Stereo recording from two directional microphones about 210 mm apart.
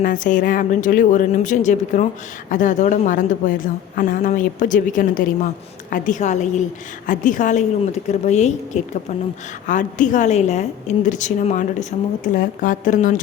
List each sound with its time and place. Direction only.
0.0 s a woman's voice: 40° left (ahead or behind)